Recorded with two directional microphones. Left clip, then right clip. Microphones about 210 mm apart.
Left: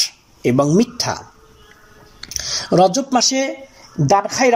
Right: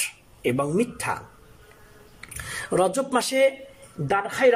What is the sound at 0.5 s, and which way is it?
Speech, 20° left (ahead or behind).